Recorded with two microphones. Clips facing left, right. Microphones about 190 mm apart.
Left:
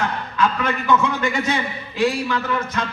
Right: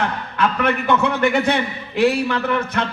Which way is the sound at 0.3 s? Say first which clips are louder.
Right 2 dB; 60° right (ahead or behind).